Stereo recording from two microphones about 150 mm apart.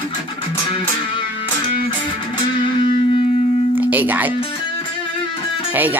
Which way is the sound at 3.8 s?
10° right (ahead or behind).